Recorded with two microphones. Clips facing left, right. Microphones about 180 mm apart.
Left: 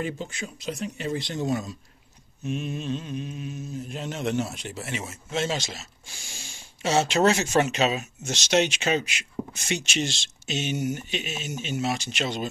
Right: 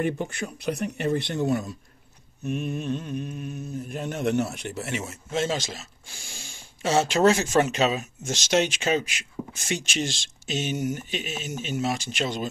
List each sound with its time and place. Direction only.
0.0 s mantra: 60° right (ahead or behind)
7.7 s speech: 45° right (ahead or behind)